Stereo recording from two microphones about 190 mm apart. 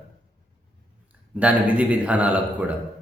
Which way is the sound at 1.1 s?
5° right (ahead or behind).